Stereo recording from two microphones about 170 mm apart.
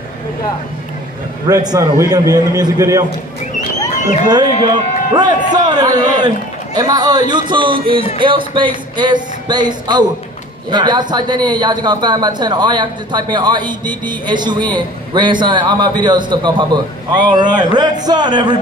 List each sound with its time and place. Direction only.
1.5 s a man's voice: 20° right (ahead or behind)
3.9 s a sound: 45° left (ahead or behind)
4.3 s a man's voice: 25° right (ahead or behind)